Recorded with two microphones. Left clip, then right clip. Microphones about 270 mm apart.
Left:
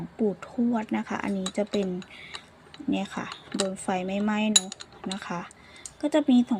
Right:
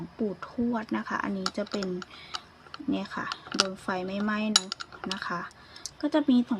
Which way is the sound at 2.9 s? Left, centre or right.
Centre.